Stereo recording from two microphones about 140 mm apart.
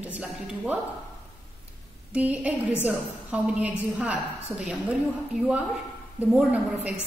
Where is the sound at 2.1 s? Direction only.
10° right (ahead or behind).